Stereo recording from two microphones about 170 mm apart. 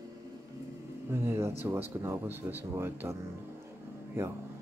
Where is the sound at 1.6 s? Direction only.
15° right (ahead or behind).